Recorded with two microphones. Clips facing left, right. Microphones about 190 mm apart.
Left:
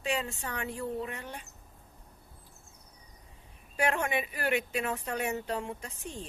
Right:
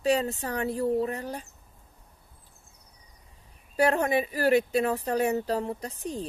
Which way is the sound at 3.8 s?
35° right (ahead or behind).